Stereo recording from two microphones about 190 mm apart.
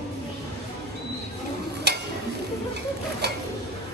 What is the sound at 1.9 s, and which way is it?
Tick-tock, 60° right (ahead or behind).